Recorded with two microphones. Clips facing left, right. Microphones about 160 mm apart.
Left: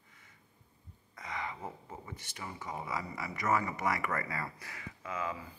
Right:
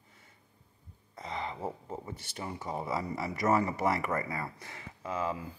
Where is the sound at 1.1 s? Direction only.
30° right (ahead or behind).